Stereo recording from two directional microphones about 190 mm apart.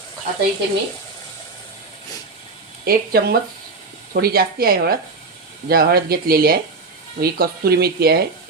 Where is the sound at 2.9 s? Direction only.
55° right (ahead or behind).